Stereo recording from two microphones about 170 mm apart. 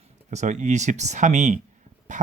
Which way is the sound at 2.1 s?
45° right (ahead or behind).